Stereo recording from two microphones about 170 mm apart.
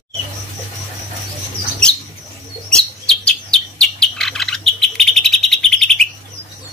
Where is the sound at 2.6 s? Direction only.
5° left (ahead or behind).